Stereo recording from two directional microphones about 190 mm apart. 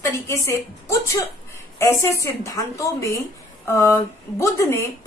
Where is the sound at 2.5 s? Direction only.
15° left (ahead or behind).